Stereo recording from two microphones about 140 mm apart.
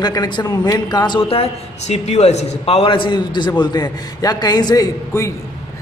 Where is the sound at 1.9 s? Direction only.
50° left (ahead or behind).